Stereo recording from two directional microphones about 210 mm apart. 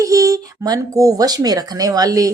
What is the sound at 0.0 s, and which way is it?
Speech, 15° right (ahead or behind).